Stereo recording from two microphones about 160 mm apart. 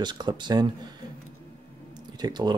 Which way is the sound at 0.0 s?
25° right (ahead or behind).